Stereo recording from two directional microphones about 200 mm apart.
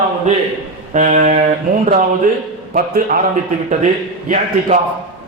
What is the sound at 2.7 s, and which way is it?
Speech, 45° right (ahead or behind).